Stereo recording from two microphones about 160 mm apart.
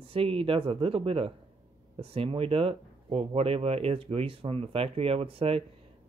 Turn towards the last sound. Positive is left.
turn(degrees=-35)  # may be behind; listen again after turning